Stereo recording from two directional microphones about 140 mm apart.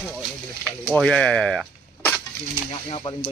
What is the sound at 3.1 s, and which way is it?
Music, 35° left (ahead or behind).